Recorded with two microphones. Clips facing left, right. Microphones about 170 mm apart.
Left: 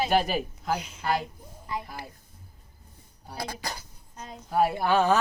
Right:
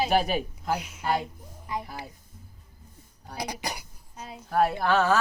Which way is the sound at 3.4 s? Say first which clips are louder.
Right 2 dB; 15° right (ahead or behind).